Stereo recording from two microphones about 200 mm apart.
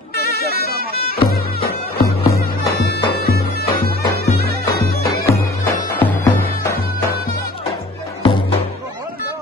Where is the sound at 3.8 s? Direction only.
50° right (ahead or behind).